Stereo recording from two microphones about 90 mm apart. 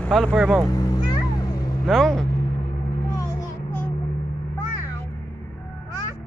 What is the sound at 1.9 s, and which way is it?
Speech, centre (ahead or behind).